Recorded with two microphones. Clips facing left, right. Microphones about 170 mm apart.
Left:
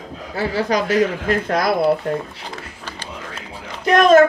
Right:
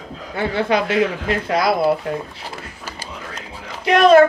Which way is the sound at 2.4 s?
5° right (ahead or behind).